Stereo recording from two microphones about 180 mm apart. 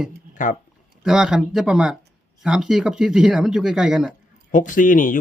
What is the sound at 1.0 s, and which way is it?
Speech, 5° right (ahead or behind).